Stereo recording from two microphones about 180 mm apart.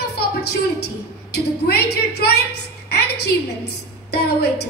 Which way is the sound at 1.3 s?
65° left (ahead or behind).